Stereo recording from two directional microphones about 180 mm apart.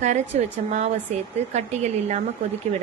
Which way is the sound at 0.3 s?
40° right (ahead or behind).